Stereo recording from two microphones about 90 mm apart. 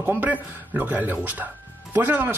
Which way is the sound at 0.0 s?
20° right (ahead or behind).